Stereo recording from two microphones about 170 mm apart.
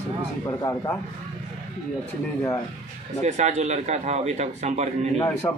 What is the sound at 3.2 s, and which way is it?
A man's voice, 40° right (ahead or behind).